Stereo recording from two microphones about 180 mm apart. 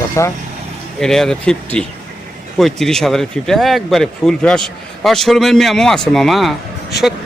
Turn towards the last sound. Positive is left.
turn(degrees=0)  # may be behind; listen again after turning